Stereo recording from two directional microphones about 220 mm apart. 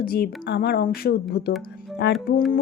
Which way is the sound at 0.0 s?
45° left (ahead or behind).